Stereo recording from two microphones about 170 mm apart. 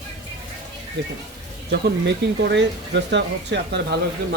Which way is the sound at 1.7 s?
85° right.